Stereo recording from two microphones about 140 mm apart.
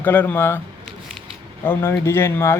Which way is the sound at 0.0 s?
15° left (ahead or behind).